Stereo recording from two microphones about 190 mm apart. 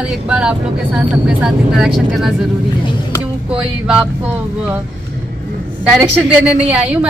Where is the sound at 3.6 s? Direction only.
5° right (ahead or behind).